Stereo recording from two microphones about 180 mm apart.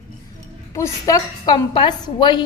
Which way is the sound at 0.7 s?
20° left (ahead or behind).